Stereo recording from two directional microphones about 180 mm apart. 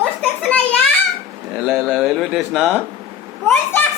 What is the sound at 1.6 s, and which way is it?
A man's voice, 5° right (ahead or behind).